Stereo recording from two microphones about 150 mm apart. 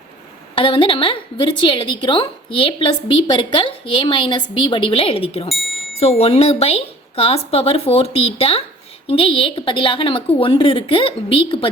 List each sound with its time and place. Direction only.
0.5 s a woman's voice: 35° left (ahead or behind)
5.5 s speech: centre (ahead or behind)
6.0 s a woman's voice: 40° left (ahead or behind)